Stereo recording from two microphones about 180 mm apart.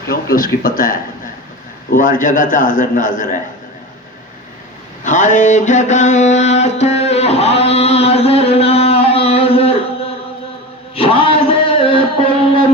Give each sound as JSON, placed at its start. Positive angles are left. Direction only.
{"t": 0.1, "sound": "a man's voice", "side_deg": 55}
{"t": 5.0, "sound": "mantra", "side_deg": 45}
{"t": 10.9, "sound": "a sound", "side_deg": 30}